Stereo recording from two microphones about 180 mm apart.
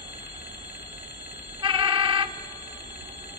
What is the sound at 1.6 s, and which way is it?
Alarm clock, 30° right (ahead or behind).